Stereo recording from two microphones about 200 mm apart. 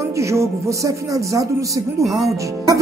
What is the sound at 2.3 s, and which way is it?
Speech, 15° right (ahead or behind).